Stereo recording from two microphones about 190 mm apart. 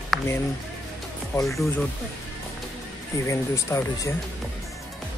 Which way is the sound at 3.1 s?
15° left (ahead or behind).